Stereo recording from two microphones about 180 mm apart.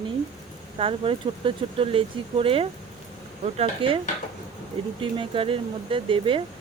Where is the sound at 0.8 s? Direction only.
30° right (ahead or behind).